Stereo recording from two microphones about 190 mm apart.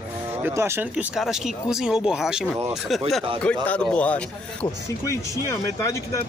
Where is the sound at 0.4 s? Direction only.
15° right (ahead or behind).